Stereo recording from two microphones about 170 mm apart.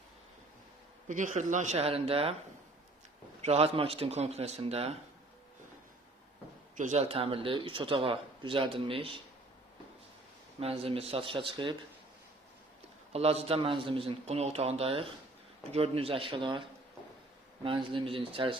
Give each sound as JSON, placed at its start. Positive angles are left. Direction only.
{"t": 1.0, "sound": "speech", "side_deg": -50}
{"t": 3.4, "sound": "a man's voice", "side_deg": -35}
{"t": 6.7, "sound": "a man's voice", "side_deg": -45}
{"t": 10.6, "sound": "a man's voice", "side_deg": -35}
{"t": 13.1, "sound": "a man's voice", "side_deg": -35}